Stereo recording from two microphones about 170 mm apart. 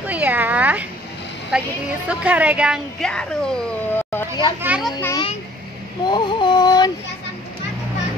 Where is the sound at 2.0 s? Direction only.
10° right (ahead or behind).